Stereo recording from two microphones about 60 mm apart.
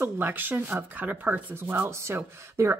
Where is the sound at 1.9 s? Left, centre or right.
Right.